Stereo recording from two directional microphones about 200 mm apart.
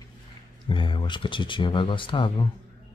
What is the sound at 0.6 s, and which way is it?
Speech, 25° left (ahead or behind).